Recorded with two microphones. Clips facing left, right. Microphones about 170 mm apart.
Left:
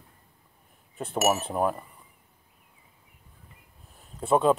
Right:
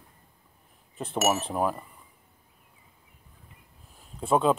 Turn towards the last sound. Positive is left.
turn(degrees=0)  # may be behind; listen again after turning